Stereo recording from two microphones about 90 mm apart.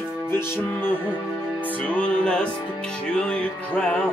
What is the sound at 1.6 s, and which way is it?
Music, 15° left (ahead or behind).